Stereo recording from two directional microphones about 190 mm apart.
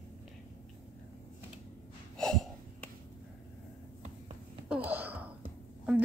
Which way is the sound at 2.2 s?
5° left (ahead or behind).